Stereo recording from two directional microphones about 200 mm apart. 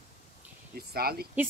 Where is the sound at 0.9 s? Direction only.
50° right (ahead or behind).